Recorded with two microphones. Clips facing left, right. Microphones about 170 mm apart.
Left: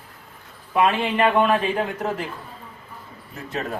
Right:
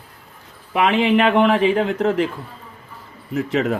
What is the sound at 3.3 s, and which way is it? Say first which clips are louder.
Speech: right 9 dB; 90° right.